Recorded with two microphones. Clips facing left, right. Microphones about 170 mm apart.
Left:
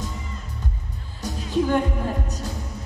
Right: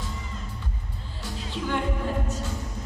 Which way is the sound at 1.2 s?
45° left (ahead or behind).